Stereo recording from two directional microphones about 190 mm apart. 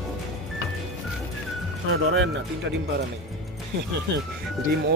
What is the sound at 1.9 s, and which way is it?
Speech, 75° right (ahead or behind).